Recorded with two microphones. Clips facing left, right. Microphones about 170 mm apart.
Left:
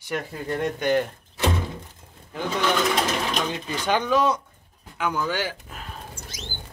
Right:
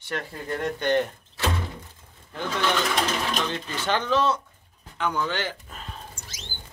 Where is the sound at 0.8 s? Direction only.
5° left (ahead or behind).